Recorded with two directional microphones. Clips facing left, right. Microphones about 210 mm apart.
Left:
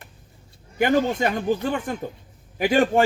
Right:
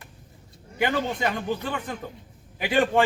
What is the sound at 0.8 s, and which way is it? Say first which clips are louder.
Speech: left 5 dB; 45° left (ahead or behind).